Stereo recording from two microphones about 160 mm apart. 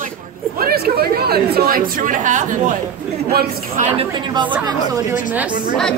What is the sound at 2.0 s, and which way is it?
Speech, 55° right (ahead or behind).